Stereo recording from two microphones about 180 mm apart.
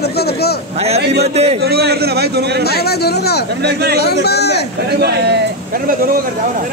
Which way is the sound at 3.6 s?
65° right (ahead or behind).